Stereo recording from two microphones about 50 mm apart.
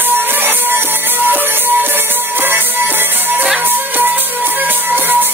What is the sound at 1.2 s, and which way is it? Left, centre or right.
Music, right.